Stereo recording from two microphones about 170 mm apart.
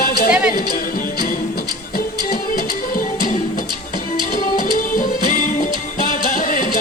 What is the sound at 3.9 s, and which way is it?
Music, 55° left (ahead or behind).